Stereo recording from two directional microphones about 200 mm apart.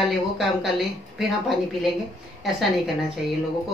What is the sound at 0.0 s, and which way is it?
A woman's voice, centre (ahead or behind).